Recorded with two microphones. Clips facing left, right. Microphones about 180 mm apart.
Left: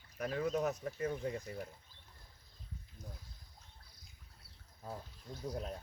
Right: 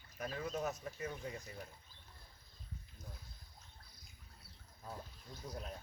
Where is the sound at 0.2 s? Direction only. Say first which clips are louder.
Left 6 dB; 65° left (ahead or behind).